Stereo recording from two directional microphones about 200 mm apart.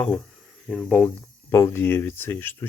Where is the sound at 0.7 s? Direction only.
5° left (ahead or behind).